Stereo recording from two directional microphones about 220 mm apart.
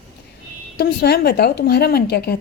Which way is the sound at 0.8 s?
45° left (ahead or behind).